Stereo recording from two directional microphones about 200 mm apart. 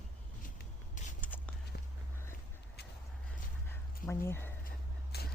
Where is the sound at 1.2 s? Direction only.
5° left (ahead or behind).